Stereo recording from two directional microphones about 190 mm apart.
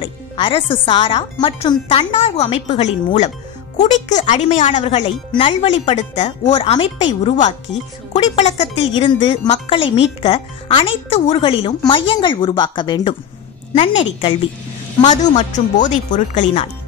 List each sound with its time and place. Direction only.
0.0 s speech: 30° left (ahead or behind)
15.0 s speech: 40° left (ahead or behind)